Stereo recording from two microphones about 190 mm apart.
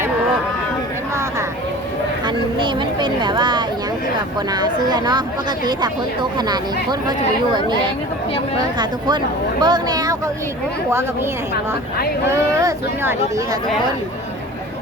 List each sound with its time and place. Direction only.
2.2 s a sound: 25° right (ahead or behind)
4.5 s speech: 20° right (ahead or behind)
8.8 s speech: 25° right (ahead or behind)
12.3 s speech: 15° right (ahead or behind)